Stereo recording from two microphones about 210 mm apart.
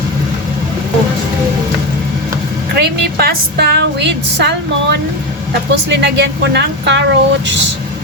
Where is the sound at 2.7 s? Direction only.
50° right (ahead or behind).